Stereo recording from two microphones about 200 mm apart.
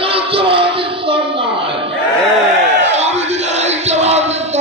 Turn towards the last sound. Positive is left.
turn(degrees=-35)  # may be behind; listen again after turning